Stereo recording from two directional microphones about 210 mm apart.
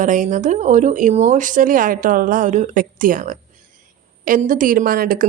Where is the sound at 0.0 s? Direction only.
40° right (ahead or behind).